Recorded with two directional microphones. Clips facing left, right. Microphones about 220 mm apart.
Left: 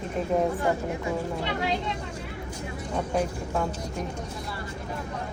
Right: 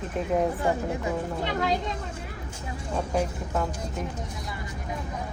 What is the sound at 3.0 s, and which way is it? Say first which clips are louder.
Speech: even; 5° right (ahead or behind).